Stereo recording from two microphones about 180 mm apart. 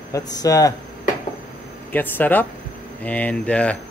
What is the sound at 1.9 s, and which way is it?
Speech, 10° left (ahead or behind).